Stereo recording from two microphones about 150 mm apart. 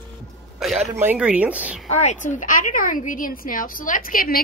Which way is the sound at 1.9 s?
50° left (ahead or behind).